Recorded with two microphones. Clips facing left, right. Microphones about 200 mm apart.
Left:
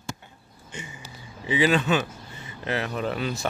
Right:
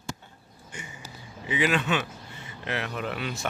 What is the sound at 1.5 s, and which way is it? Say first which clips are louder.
Speech: left 4 dB; 35° left (ahead or behind).